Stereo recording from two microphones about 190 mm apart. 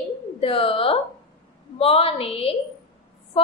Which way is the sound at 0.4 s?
30° left (ahead or behind).